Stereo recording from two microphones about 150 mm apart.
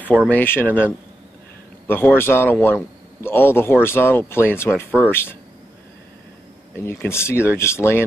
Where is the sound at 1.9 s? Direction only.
15° left (ahead or behind).